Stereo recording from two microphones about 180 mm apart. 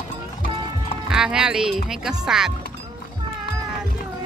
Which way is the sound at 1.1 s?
5° right (ahead or behind).